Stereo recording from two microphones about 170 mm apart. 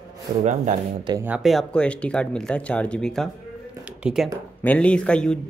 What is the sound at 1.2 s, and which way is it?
Speech, 5° right (ahead or behind).